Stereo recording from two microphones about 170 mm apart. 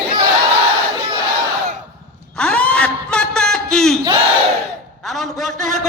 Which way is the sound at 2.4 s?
5° left (ahead or behind).